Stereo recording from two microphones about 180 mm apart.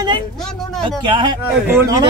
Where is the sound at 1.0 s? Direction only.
25° right (ahead or behind).